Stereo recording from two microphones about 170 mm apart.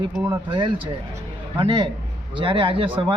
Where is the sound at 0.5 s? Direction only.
30° right (ahead or behind).